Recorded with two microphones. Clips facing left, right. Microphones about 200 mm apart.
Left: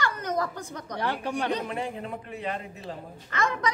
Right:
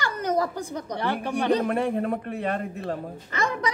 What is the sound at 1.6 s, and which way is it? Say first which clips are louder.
A man's voice: right 8 dB; 60° right (ahead or behind).